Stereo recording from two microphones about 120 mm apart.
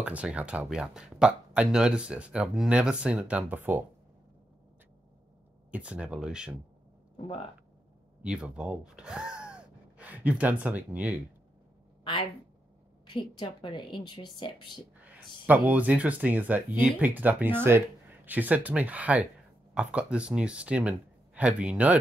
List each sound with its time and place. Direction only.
0.0 s speech: 10° right (ahead or behind)
5.7 s speech: 10° right (ahead or behind)
8.2 s speech: 10° right (ahead or behind)
12.0 s speech: 45° left (ahead or behind)
15.1 s speech: 15° right (ahead or behind)